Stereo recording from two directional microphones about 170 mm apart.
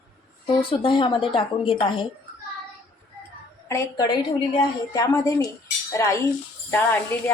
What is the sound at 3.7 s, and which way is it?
Speech, 20° left (ahead or behind).